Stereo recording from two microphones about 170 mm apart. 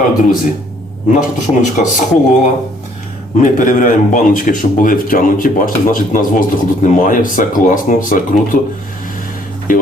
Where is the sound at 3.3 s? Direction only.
50° left (ahead or behind).